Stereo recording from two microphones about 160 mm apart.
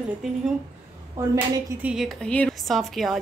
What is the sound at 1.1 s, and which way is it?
Speech, 20° right (ahead or behind).